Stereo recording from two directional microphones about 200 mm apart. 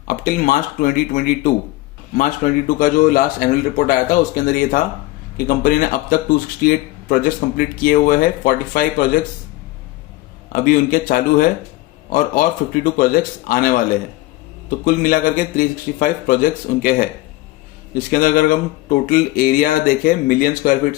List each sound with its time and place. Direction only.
0.1 s speech: 45° left (ahead or behind)
10.5 s speech: 45° left (ahead or behind)